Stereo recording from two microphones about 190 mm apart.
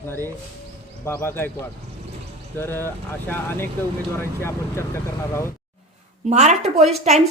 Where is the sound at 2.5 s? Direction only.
10° left (ahead or behind).